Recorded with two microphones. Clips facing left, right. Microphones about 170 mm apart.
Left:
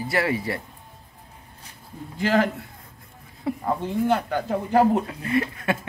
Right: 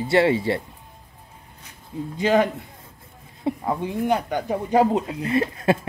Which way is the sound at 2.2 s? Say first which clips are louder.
Right 2 dB; 20° right (ahead or behind).